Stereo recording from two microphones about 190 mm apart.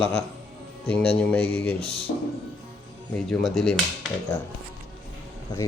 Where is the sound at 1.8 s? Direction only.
30° left (ahead or behind).